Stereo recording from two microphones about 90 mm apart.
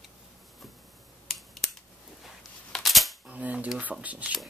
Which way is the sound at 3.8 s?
15° right (ahead or behind).